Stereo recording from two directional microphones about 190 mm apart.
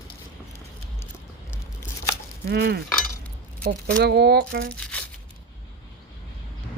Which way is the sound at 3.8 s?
60° right (ahead or behind).